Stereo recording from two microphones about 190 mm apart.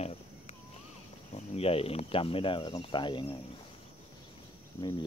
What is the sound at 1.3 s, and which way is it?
Speech, 30° left (ahead or behind).